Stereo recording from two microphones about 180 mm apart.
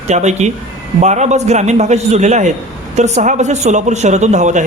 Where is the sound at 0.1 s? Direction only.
40° right (ahead or behind).